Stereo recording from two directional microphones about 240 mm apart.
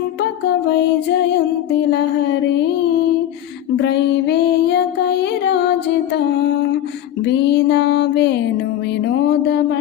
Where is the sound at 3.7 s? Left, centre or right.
Left.